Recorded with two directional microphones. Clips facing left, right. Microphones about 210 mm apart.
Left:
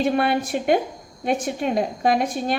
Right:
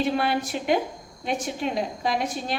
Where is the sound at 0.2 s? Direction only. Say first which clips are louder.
Left 4 dB; 55° left (ahead or behind).